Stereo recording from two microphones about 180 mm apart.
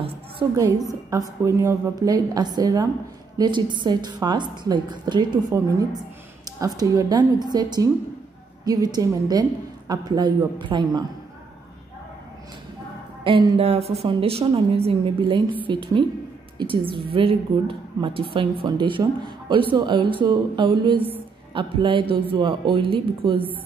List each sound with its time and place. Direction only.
0.0 s a sound: 25° right (ahead or behind)
1.4 s a woman's voice: 15° right (ahead or behind)
13.2 s a woman's voice: 25° right (ahead or behind)